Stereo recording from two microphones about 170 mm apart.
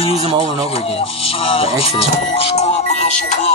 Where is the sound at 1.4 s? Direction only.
35° left (ahead or behind).